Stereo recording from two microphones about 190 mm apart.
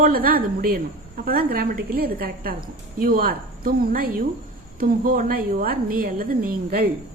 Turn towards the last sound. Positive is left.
turn(degrees=-50)  # may be behind; listen again after turning